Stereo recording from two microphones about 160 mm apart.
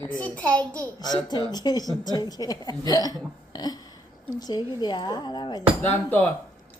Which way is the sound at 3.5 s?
25° left (ahead or behind).